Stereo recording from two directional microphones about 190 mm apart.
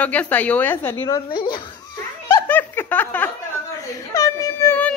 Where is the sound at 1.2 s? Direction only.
25° left (ahead or behind).